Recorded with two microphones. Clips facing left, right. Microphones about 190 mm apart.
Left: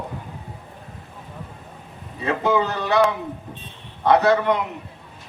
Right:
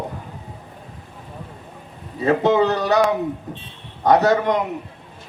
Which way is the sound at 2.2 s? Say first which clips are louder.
Right 5 dB; 40° right (ahead or behind).